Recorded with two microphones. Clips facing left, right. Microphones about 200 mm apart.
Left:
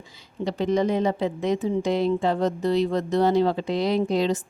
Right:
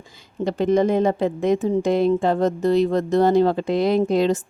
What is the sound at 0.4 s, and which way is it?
Speech, 50° right (ahead or behind).